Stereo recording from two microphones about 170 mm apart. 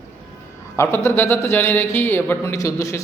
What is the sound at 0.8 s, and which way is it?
Speech, 15° left (ahead or behind).